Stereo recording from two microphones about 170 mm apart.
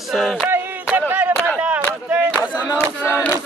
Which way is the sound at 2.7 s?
15° left (ahead or behind).